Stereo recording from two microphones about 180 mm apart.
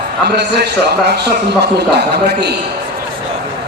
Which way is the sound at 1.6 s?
70° right (ahead or behind).